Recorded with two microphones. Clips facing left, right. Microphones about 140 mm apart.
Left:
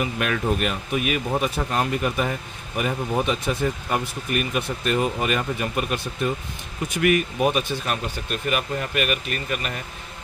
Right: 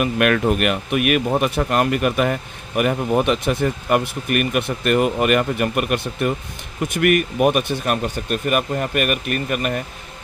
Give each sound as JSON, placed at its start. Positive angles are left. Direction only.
{"t": 0.0, "sound": "speech", "side_deg": -65}